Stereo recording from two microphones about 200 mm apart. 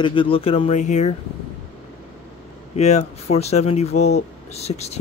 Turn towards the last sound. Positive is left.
turn(degrees=30)  # may be behind; listen again after turning